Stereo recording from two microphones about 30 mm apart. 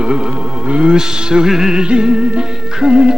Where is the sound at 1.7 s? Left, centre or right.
Right.